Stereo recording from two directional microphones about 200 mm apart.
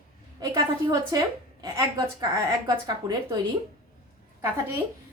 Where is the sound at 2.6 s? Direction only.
20° right (ahead or behind).